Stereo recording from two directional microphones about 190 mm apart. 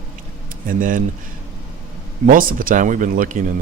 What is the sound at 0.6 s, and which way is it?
Speech, 45° right (ahead or behind).